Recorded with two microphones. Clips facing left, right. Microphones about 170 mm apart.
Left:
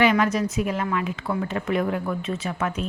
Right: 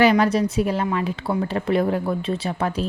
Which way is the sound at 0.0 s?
35° right (ahead or behind).